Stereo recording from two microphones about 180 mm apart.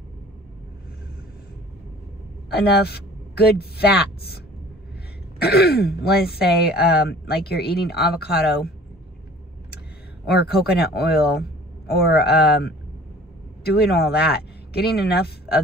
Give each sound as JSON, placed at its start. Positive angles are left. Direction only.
{"t": 2.5, "sound": "speech", "side_deg": 60}
{"t": 5.4, "sound": "speech", "side_deg": 60}
{"t": 10.2, "sound": "speech", "side_deg": 60}